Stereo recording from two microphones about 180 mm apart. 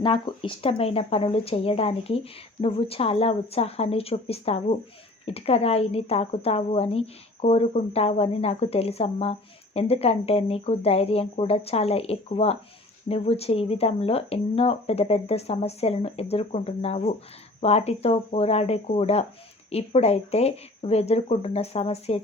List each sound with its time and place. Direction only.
0.0 s a woman's voice: 25° left (ahead or behind)